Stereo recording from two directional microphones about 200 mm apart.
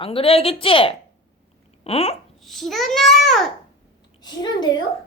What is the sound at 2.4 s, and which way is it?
A child's voice, centre (ahead or behind).